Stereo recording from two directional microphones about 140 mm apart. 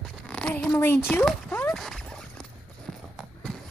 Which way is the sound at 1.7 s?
Centre (ahead or behind).